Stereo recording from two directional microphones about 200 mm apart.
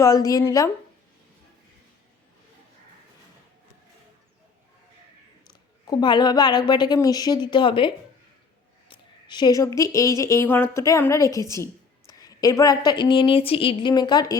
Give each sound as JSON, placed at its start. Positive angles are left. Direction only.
{"t": 0.0, "sound": "a woman's voice", "side_deg": 15}
{"t": 5.5, "sound": "a woman's voice", "side_deg": 20}